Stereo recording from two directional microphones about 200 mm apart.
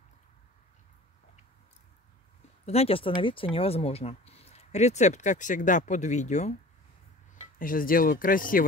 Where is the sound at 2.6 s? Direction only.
30° left (ahead or behind).